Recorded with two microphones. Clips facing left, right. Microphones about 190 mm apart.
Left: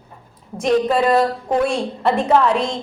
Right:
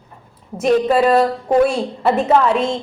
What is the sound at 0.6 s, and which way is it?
A woman's voice, 5° right (ahead or behind).